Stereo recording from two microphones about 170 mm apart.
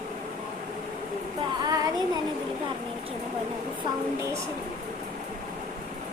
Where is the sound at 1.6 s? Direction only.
20° right (ahead or behind).